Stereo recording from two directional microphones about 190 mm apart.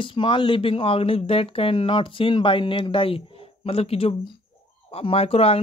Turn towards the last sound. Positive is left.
turn(degrees=30)  # may be behind; listen again after turning